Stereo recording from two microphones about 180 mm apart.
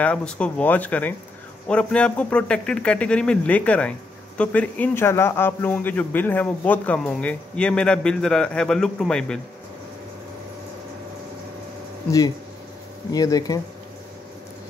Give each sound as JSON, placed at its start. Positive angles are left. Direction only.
{"t": 0.0, "sound": "a man's voice", "side_deg": 5}
{"t": 13.1, "sound": "speech", "side_deg": 20}